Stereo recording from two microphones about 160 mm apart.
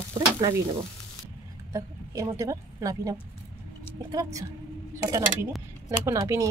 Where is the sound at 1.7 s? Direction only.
20° right (ahead or behind).